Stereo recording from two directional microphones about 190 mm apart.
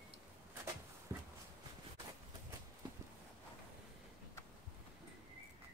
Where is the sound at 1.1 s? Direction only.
15° right (ahead or behind).